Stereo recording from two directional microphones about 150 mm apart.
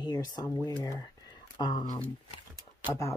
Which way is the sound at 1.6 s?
30° left (ahead or behind).